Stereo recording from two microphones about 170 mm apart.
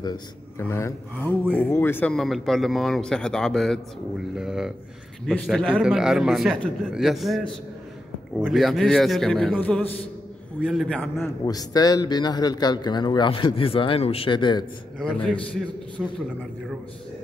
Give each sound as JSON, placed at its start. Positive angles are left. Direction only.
{"t": 0.6, "sound": "speech", "side_deg": 15}
{"t": 2.1, "sound": "a man's voice", "side_deg": 0}
{"t": 11.4, "sound": "speech", "side_deg": 20}
{"t": 16.0, "sound": "a man's voice", "side_deg": -5}